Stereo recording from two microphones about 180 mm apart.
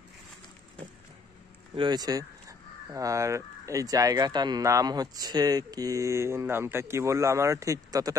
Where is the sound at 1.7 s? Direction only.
25° right (ahead or behind).